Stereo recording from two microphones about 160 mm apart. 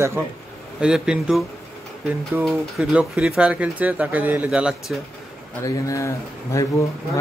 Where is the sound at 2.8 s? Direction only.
5° right (ahead or behind).